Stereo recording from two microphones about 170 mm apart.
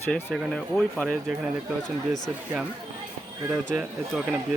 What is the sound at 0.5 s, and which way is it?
Speech, 5° left (ahead or behind).